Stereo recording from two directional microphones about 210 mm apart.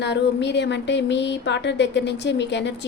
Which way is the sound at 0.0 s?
55° left (ahead or behind).